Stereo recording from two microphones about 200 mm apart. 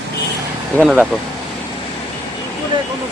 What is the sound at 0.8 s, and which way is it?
Speech, 5° right (ahead or behind).